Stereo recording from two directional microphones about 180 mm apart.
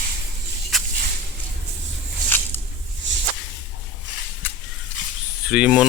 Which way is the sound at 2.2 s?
10° left (ahead or behind).